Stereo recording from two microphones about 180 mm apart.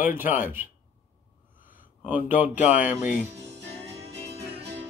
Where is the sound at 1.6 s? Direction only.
50° left (ahead or behind).